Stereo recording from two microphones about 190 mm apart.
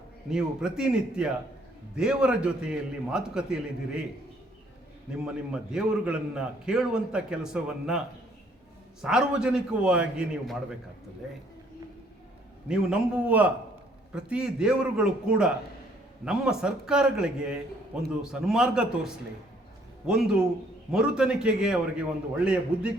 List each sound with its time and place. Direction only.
0.3 s a man's voice: 5° right (ahead or behind)
5.2 s a man's voice: 5° right (ahead or behind)
12.6 s a man's voice: 5° right (ahead or behind)